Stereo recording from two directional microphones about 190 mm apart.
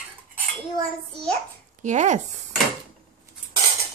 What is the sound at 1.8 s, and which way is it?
Speech, 40° right (ahead or behind).